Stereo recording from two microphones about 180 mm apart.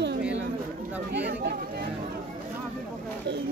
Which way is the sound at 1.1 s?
65° right (ahead or behind).